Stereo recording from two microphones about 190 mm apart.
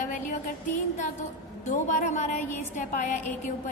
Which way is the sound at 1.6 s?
40° left (ahead or behind).